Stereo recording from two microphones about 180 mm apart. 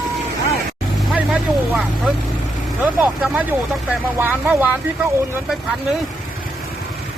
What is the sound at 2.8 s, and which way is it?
Speech, 10° right (ahead or behind).